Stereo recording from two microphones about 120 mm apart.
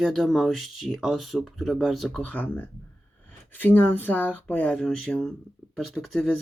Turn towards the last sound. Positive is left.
turn(degrees=5)  # may be behind; listen again after turning